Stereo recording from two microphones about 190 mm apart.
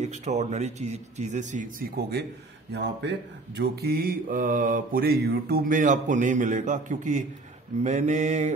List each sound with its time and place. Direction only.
0.0 s speech: 35° right (ahead or behind)
2.0 s a man's voice: 55° right (ahead or behind)
2.7 s mantra: 65° right (ahead or behind); by 7.2 s 40° right (ahead or behind)
7.8 s speech: 40° right (ahead or behind)